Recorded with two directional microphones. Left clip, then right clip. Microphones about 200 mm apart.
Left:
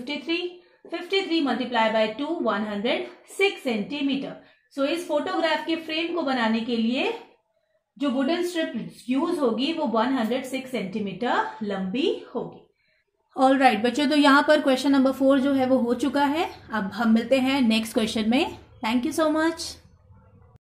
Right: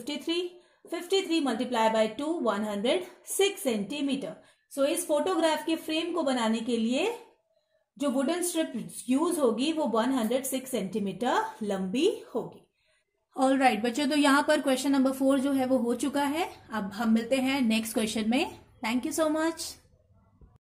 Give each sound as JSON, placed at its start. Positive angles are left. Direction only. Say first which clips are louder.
{"t": 0.3, "sound": "a woman's voice", "louder": "left 2 dB", "side_deg": -55}
{"t": 8.0, "sound": "a woman's voice", "louder": "left 4 dB", "side_deg": -55}
{"t": 13.3, "sound": "a woman's voice", "louder": "left 5 dB", "side_deg": -10}